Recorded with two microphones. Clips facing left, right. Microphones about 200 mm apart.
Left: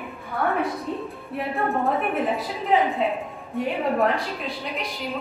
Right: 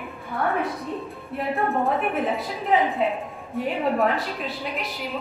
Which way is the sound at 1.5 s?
Centre (ahead or behind).